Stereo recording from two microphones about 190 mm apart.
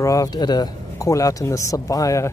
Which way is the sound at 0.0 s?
20° left (ahead or behind).